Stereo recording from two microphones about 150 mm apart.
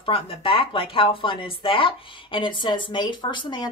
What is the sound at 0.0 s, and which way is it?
Speech, 35° left (ahead or behind).